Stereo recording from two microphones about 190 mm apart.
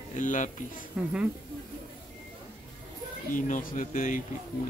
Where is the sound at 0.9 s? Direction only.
5° right (ahead or behind).